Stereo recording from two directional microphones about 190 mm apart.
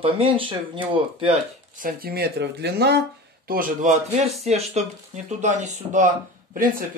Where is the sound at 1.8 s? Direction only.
50° right (ahead or behind).